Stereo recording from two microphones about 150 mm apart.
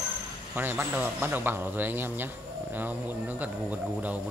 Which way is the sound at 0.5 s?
10° right (ahead or behind).